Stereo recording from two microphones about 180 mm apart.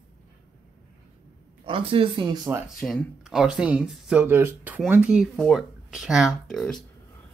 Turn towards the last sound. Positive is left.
turn(degrees=5)  # may be behind; listen again after turning